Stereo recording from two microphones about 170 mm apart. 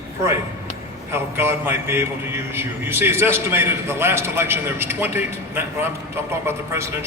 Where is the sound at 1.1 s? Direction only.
15° right (ahead or behind).